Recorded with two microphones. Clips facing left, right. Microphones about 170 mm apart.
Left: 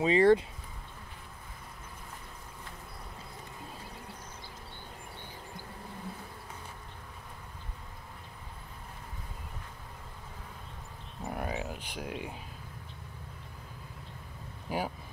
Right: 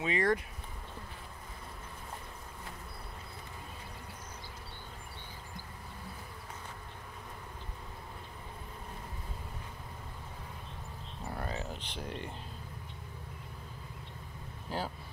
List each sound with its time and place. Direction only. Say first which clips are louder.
0.0 s speech: left 8 dB; 30° left (ahead or behind)
11.2 s a sound: left 3 dB; 15° left (ahead or behind)
14.7 s speech: left 3 dB; 15° left (ahead or behind)